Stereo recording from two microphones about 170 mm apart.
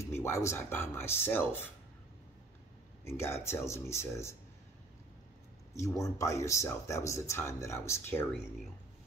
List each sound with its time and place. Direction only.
0.0 s speech: 15° left (ahead or behind)
3.1 s speech: 15° left (ahead or behind)
5.8 s speech: 20° left (ahead or behind)